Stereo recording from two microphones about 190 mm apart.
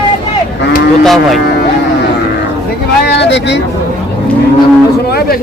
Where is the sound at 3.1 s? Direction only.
65° left (ahead or behind).